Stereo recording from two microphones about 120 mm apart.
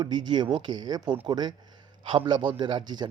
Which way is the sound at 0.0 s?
40° right (ahead or behind).